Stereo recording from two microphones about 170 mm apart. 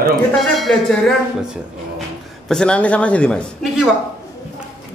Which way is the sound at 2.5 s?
5° left (ahead or behind).